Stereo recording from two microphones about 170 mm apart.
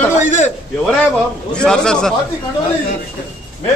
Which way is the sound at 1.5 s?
5° left (ahead or behind).